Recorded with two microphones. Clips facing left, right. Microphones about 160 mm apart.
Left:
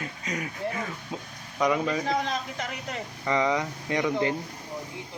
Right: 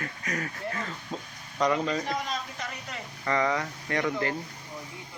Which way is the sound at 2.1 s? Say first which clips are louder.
Left 4 dB; 60° left (ahead or behind).